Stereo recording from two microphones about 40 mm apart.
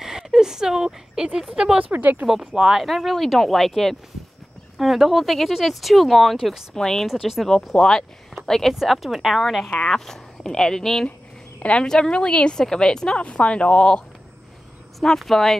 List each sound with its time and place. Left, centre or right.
0.0 s a sound: centre
1.5 s speech: centre
1.9 s speech: right
2.7 s speech: centre
6.7 s speech: centre
7.1 s speech: centre
7.7 s speech: centre
9.7 s speech: centre
11.6 s speech: left
13.2 s speech: left
15.1 s speech: centre